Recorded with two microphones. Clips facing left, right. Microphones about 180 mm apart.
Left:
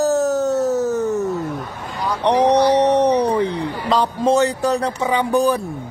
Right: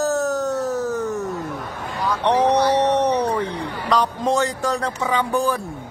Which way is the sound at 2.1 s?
15° left (ahead or behind).